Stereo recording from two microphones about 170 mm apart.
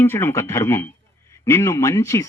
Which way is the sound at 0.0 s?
15° left (ahead or behind).